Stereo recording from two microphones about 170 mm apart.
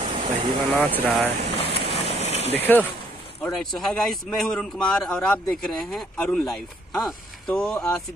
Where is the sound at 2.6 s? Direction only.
10° left (ahead or behind).